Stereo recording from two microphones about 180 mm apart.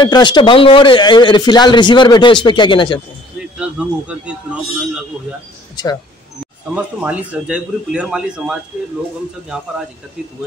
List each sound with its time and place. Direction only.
0.0 s speech: 25° left (ahead or behind)
3.3 s a sound: 5° right (ahead or behind)
6.7 s speech: 10° right (ahead or behind)